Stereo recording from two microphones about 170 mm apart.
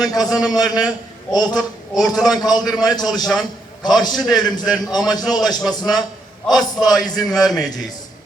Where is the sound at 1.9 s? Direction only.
Centre (ahead or behind).